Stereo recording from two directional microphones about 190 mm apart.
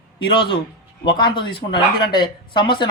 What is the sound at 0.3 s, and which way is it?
Speech, 25° left (ahead or behind).